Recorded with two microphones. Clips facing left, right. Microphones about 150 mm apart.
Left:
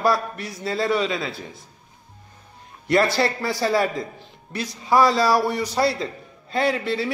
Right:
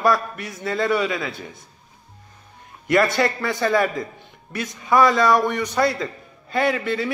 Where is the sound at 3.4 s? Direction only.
35° left (ahead or behind).